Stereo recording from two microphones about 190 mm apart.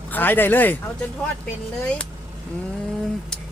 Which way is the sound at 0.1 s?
10° left (ahead or behind).